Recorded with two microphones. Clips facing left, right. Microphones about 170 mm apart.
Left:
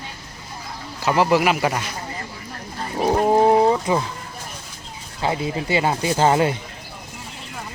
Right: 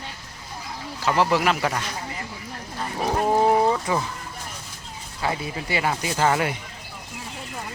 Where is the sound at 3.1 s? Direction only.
20° left (ahead or behind).